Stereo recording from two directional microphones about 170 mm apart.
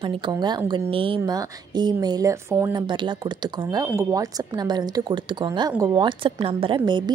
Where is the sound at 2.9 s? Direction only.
25° right (ahead or behind).